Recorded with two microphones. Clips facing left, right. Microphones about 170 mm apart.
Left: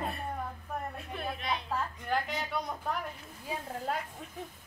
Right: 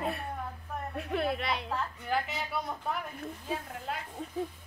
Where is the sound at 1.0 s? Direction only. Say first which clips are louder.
Right 7 dB; 70° right (ahead or behind).